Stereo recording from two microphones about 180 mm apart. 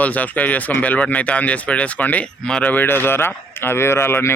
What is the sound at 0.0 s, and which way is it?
A man's voice, 10° left (ahead or behind).